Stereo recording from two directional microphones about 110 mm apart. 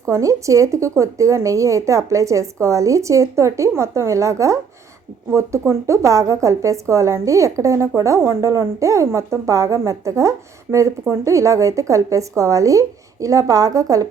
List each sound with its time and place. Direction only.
0.0 s a woman's voice: 30° right (ahead or behind)